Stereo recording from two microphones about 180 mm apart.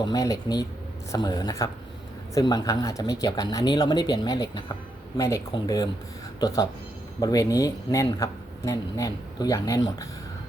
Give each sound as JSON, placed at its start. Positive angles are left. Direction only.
{"t": 0.0, "sound": "speech", "side_deg": 20}
{"t": 7.2, "sound": "speech", "side_deg": 20}